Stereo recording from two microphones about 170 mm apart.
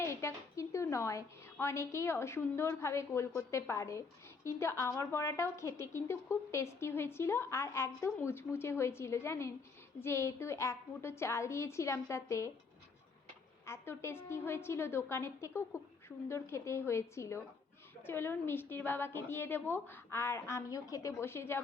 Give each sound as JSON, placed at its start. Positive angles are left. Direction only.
{"t": 0.0, "sound": "a woman's voice", "side_deg": 15}
{"t": 13.7, "sound": "a woman's voice", "side_deg": 15}